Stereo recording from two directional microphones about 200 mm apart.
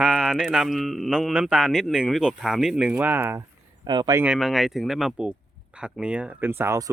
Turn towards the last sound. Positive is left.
turn(degrees=-15)  # may be behind; listen again after turning